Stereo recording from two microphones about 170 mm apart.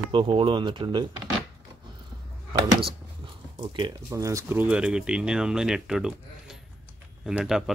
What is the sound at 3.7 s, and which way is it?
Speech, 25° right (ahead or behind).